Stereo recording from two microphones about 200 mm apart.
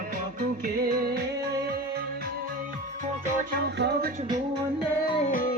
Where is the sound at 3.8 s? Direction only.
55° right (ahead or behind).